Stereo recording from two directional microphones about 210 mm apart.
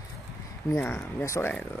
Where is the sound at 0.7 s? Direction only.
10° left (ahead or behind).